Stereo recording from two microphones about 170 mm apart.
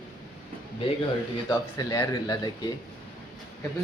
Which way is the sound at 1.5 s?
20° left (ahead or behind).